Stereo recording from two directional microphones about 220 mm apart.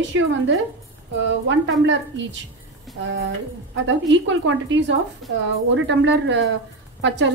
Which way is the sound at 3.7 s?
55° right (ahead or behind).